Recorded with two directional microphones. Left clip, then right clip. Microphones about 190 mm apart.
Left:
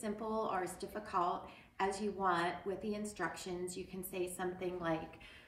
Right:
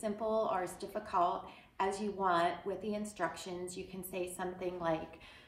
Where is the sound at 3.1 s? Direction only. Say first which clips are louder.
Right 2 dB; 30° right (ahead or behind).